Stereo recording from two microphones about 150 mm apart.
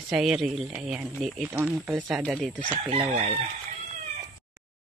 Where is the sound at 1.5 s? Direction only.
15° right (ahead or behind).